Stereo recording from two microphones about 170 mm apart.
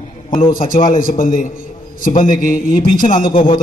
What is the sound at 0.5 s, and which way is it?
A man's voice, 55° left (ahead or behind).